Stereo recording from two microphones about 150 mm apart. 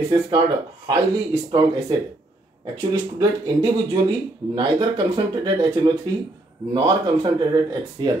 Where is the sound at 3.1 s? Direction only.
30° right (ahead or behind).